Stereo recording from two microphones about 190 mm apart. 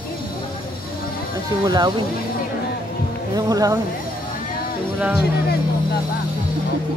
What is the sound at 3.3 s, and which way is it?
Speech, 20° right (ahead or behind).